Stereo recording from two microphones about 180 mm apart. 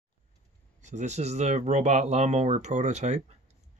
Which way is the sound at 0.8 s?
40° right (ahead or behind).